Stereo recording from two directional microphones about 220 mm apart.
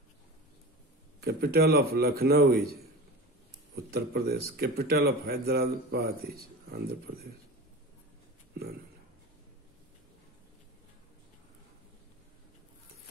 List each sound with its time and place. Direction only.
1.2 s speech: 45° right (ahead or behind)
3.7 s speech: 45° right (ahead or behind)